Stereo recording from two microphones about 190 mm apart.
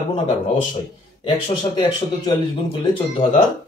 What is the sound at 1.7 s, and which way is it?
Speech, 25° left (ahead or behind).